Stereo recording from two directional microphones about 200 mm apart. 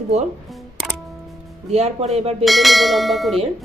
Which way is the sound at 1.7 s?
30° right (ahead or behind).